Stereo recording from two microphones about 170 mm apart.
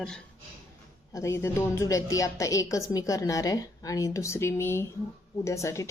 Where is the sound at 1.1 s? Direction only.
15° left (ahead or behind).